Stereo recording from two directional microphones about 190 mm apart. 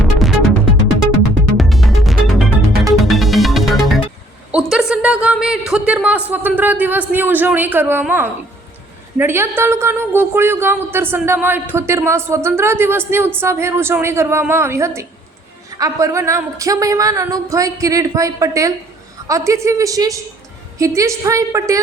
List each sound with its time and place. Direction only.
0.0 s music: centre (ahead or behind)
1.5 s music: centre (ahead or behind)
4.5 s a woman's voice: 5° right (ahead or behind)